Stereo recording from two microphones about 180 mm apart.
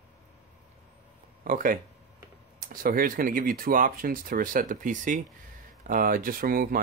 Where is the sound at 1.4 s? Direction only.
50° right (ahead or behind).